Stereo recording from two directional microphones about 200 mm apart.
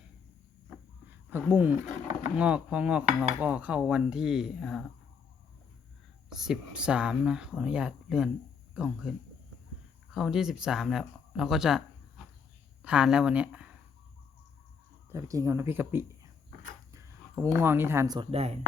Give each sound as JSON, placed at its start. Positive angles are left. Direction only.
{"t": 1.3, "sound": "speech", "side_deg": -10}
{"t": 6.3, "sound": "speech", "side_deg": 0}
{"t": 10.2, "sound": "speech", "side_deg": 0}
{"t": 15.1, "sound": "speech", "side_deg": -15}